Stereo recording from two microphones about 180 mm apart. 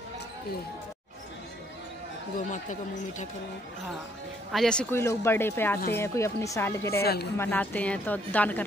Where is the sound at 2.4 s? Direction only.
45° left (ahead or behind).